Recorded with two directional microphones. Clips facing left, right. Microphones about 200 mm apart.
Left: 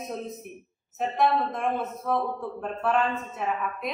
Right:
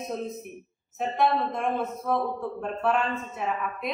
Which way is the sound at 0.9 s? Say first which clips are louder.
Even; centre (ahead or behind).